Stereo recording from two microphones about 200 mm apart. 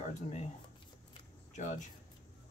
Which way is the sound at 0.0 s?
35° left (ahead or behind).